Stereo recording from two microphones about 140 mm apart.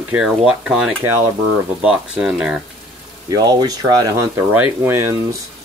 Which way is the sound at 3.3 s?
30° right (ahead or behind).